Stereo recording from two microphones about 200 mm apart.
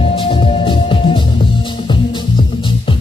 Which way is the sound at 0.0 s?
25° left (ahead or behind).